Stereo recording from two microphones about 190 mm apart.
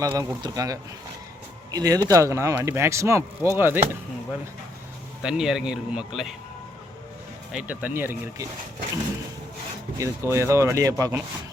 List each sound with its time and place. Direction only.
0.0 s speech: 20° right (ahead or behind)
5.2 s a man's voice: 5° right (ahead or behind)
7.5 s speech: 5° right (ahead or behind)
10.0 s speech: 15° right (ahead or behind)